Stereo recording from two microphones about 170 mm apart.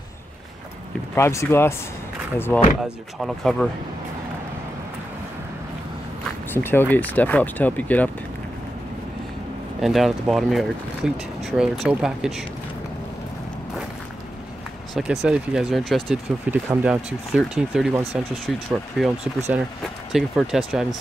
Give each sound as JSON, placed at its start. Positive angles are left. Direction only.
{"t": 1.1, "sound": "speech", "side_deg": 15}
{"t": 2.8, "sound": "speech", "side_deg": 0}
{"t": 6.5, "sound": "speech", "side_deg": 10}
{"t": 9.8, "sound": "speech", "side_deg": 0}
{"t": 15.0, "sound": "speech", "side_deg": -5}